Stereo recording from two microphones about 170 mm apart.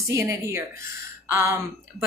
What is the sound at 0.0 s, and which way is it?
A woman's voice, 15° right (ahead or behind).